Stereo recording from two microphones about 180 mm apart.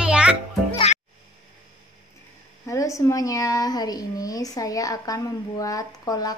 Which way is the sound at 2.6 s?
15° left (ahead or behind).